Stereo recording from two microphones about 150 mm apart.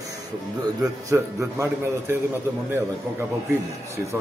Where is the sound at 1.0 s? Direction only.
20° right (ahead or behind).